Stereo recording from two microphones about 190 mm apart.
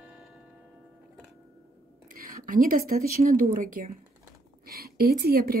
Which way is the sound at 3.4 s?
45° right (ahead or behind).